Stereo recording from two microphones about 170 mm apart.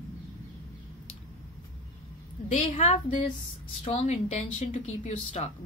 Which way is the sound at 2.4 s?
45° left (ahead or behind).